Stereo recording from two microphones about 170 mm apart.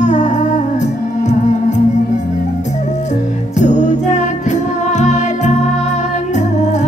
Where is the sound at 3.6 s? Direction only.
45° left (ahead or behind).